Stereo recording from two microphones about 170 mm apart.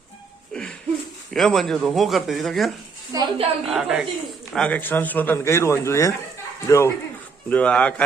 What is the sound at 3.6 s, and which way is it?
Speech, 5° right (ahead or behind).